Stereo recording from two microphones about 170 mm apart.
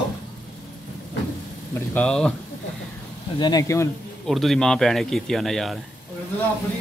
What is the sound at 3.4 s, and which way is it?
Speech, 20° left (ahead or behind).